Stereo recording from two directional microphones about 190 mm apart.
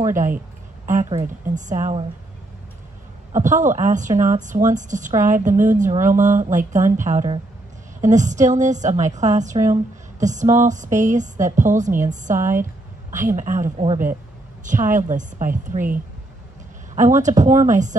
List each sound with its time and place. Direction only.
0.0 s a woman's voice: 40° right (ahead or behind)
3.3 s a woman's voice: 40° right (ahead or behind)